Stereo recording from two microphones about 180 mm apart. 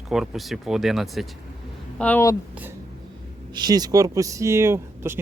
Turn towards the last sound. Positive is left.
turn(degrees=-15)  # may be behind; listen again after turning